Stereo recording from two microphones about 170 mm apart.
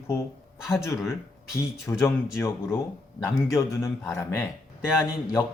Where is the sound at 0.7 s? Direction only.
20° left (ahead or behind).